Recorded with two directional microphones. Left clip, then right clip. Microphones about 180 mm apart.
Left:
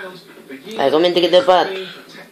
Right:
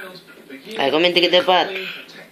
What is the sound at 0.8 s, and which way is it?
Speech, 55° right (ahead or behind).